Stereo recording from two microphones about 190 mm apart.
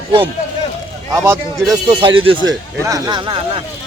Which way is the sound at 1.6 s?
25° right (ahead or behind).